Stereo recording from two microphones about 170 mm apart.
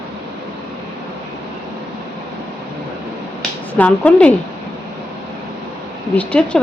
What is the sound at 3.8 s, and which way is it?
Speech, 5° left (ahead or behind).